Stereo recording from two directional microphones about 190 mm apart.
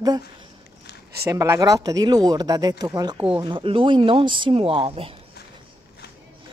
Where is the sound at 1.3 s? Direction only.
15° right (ahead or behind).